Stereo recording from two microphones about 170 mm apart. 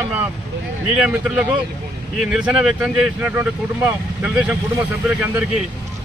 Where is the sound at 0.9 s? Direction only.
5° right (ahead or behind).